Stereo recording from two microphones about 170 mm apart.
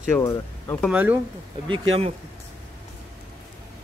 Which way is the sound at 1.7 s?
35° right (ahead or behind).